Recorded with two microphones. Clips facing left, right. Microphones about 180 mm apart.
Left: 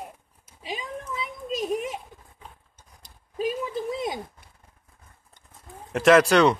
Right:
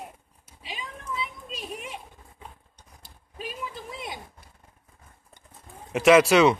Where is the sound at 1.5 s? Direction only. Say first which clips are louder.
Left 10 dB; 40° left (ahead or behind).